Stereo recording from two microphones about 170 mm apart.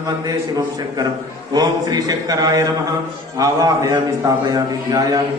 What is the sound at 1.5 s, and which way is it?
Mantra, 20° right (ahead or behind).